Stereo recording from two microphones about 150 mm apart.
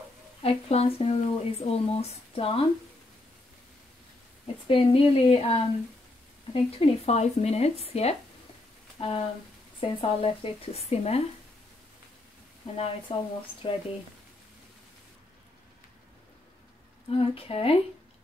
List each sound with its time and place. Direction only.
0.4 s speech: 40° left (ahead or behind)
4.6 s speech: 40° left (ahead or behind)
12.7 s speech: 35° left (ahead or behind)
17.1 s speech: 40° left (ahead or behind)